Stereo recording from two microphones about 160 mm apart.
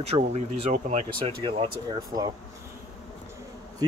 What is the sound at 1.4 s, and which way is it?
Speech, 35° right (ahead or behind).